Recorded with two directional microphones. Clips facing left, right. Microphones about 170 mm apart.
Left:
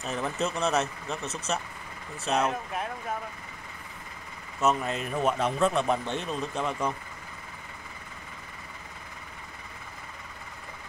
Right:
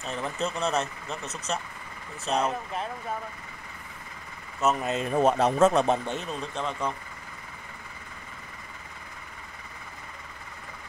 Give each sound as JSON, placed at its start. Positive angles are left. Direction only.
{"t": 0.0, "sound": "speech", "side_deg": 5}
{"t": 4.7, "sound": "speech", "side_deg": -25}
{"t": 5.1, "sound": "speech", "side_deg": -40}
{"t": 6.0, "sound": "speech", "side_deg": 0}